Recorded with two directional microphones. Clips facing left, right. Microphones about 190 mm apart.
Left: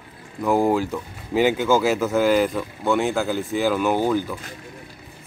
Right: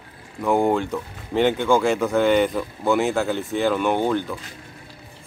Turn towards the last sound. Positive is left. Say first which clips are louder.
# left 1 dB
turn(degrees=5)  # may be behind; listen again after turning